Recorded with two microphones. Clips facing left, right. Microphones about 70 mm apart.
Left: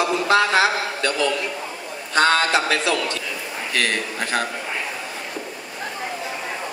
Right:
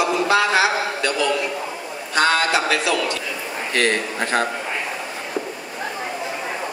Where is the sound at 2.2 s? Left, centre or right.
Centre.